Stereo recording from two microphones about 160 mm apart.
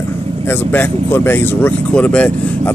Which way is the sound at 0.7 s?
15° left (ahead or behind).